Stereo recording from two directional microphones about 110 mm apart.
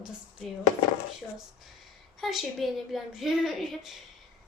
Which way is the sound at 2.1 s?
Centre (ahead or behind).